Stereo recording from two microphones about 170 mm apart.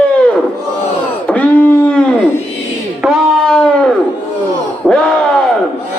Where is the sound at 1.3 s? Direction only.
10° left (ahead or behind).